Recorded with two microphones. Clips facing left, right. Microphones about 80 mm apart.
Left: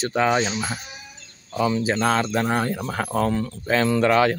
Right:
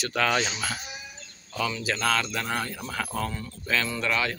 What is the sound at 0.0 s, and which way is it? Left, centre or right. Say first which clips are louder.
Speech: left 5 dB; left.